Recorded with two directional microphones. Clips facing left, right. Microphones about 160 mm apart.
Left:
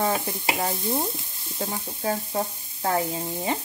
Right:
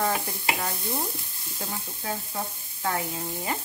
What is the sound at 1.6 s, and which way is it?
Speech, 35° left (ahead or behind).